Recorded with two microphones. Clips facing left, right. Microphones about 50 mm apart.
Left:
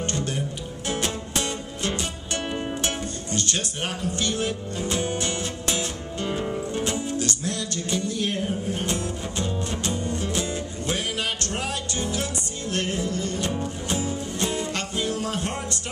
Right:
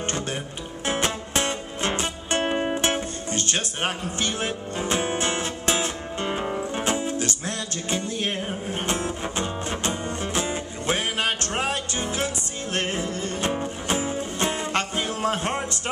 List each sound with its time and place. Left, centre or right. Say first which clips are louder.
0.8 s music: right 3 dB; right